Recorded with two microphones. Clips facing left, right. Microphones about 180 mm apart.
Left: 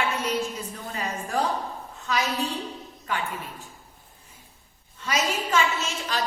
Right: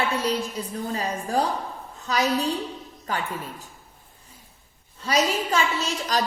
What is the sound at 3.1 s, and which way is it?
Speech, 40° right (ahead or behind).